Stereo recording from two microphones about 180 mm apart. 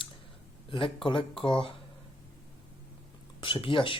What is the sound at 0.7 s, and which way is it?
Speech, 30° left (ahead or behind).